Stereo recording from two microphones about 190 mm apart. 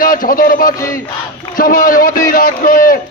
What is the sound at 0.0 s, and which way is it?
Speech, 45° left (ahead or behind).